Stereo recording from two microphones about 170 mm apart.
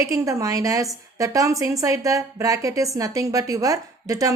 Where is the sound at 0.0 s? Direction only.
20° right (ahead or behind).